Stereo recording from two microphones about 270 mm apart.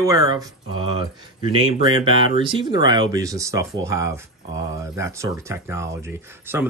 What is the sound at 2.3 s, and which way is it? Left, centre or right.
Speech, centre.